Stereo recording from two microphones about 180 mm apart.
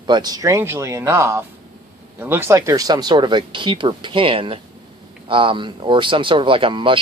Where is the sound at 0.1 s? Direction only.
20° right (ahead or behind).